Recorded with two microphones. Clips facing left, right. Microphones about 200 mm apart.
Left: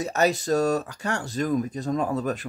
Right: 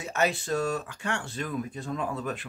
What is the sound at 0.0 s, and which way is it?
Speech, 40° left (ahead or behind).